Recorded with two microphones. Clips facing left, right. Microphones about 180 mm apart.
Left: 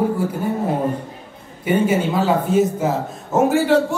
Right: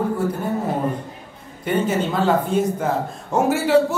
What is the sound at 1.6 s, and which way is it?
Speech, 10° left (ahead or behind).